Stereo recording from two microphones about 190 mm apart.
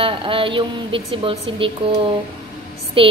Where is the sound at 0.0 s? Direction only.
25° right (ahead or behind).